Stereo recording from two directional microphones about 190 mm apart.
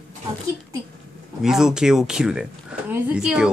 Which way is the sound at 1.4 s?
5° right (ahead or behind).